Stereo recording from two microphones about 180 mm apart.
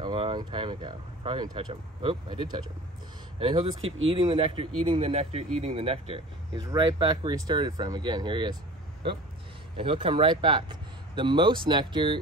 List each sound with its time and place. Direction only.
0.0 s speech: 25° right (ahead or behind)
6.5 s speech: 20° right (ahead or behind)
9.8 s speech: 30° right (ahead or behind)